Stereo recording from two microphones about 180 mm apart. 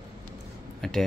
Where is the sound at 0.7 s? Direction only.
5° left (ahead or behind).